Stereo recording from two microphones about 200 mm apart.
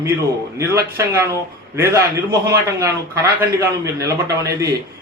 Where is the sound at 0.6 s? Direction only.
15° right (ahead or behind).